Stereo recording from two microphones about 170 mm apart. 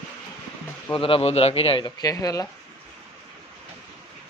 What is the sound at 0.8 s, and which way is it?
Speech, 30° left (ahead or behind).